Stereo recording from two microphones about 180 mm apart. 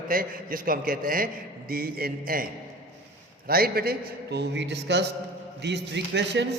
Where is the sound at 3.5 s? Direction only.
55° right (ahead or behind).